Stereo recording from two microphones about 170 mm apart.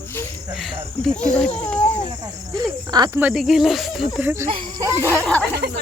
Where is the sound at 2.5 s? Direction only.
25° right (ahead or behind).